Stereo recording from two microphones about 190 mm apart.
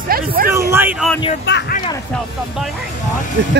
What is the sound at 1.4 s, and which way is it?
Speech, 65° left (ahead or behind).